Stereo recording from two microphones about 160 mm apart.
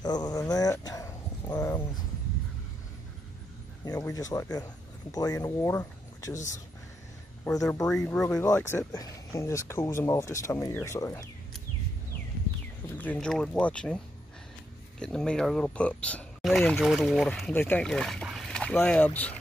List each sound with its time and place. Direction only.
0.0 s a sound: 25° left (ahead or behind)
3.8 s speech: 20° left (ahead or behind)
8.0 s speech: 5° left (ahead or behind)
12.9 s speech: 10° left (ahead or behind)
15.0 s speech: 5° left (ahead or behind)
17.5 s speech: 10° left (ahead or behind)